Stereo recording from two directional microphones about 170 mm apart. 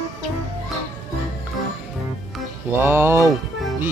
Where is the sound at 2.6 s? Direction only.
10° right (ahead or behind).